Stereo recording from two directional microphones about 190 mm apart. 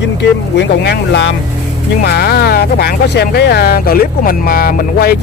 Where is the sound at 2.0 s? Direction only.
55° left (ahead or behind).